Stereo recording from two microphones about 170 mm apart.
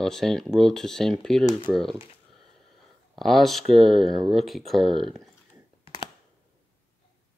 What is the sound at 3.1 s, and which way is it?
Speech, centre (ahead or behind).